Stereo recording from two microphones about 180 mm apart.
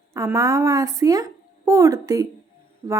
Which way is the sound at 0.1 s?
15° right (ahead or behind).